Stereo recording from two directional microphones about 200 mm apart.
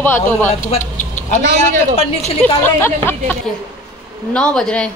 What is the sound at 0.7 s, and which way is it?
Vehicle, 40° left (ahead or behind).